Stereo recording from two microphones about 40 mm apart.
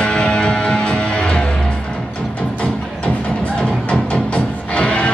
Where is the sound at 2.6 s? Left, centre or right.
Left.